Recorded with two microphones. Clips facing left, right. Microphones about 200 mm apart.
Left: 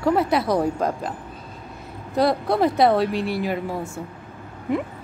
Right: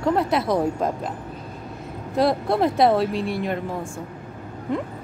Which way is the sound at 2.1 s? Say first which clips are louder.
Even; centre (ahead or behind).